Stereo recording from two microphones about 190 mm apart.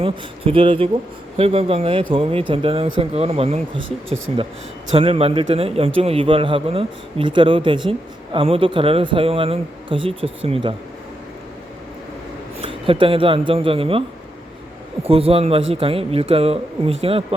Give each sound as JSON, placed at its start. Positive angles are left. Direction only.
{"t": 0.0, "sound": "a man's voice", "side_deg": -30}
{"t": 12.9, "sound": "a man's voice", "side_deg": -25}
{"t": 15.1, "sound": "a man's voice", "side_deg": -30}